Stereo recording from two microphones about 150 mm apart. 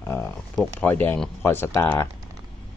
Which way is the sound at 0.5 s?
10° left (ahead or behind).